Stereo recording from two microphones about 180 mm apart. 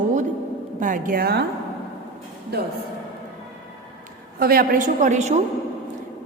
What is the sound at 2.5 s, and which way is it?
Speech, 60° right (ahead or behind).